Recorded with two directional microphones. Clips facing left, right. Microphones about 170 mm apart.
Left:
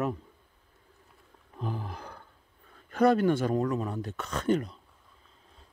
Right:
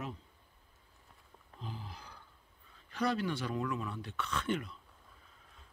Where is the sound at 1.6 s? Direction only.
55° left (ahead or behind).